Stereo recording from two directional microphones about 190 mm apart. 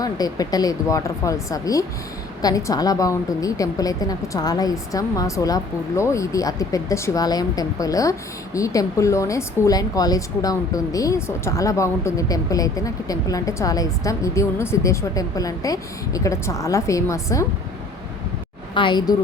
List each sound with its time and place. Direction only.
0.0 s speech: 20° left (ahead or behind)
18.7 s a woman's voice: 25° left (ahead or behind)